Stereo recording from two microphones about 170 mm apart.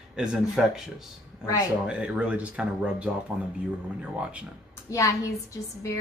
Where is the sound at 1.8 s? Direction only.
5° right (ahead or behind).